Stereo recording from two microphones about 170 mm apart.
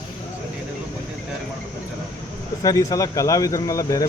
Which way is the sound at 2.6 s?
20° left (ahead or behind).